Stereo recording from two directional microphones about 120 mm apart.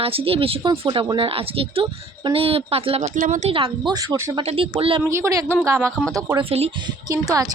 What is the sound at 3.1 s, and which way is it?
Speech, 90° right.